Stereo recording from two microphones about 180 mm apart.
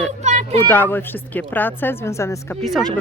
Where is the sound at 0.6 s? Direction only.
10° left (ahead or behind).